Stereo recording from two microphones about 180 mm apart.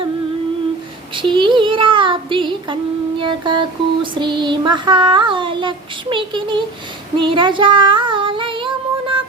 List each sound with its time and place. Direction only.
1.1 s child singing: 25° right (ahead or behind)
7.2 s female singing: 25° right (ahead or behind)